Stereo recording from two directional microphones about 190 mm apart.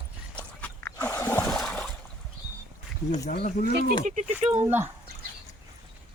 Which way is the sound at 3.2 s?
50° left (ahead or behind).